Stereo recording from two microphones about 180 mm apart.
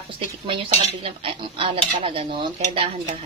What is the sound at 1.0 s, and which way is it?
A woman's voice, 30° right (ahead or behind).